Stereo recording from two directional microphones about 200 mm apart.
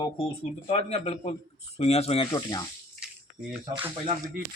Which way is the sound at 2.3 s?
20° left (ahead or behind).